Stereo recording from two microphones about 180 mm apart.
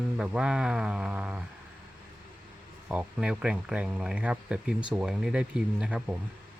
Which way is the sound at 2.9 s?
5° right (ahead or behind).